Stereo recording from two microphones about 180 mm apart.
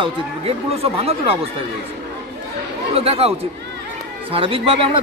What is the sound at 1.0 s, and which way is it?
Speech, 35° right (ahead or behind).